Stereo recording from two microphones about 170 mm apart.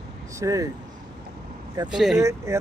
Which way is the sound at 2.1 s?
20° right (ahead or behind).